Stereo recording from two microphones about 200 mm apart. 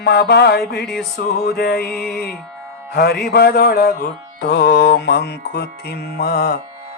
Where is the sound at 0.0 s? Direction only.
55° left (ahead or behind).